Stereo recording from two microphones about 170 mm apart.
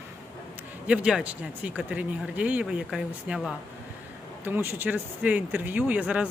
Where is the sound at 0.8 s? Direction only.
5° right (ahead or behind).